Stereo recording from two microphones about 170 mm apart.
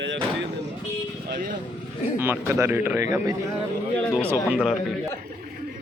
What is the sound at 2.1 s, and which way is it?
A man's voice, 10° right (ahead or behind).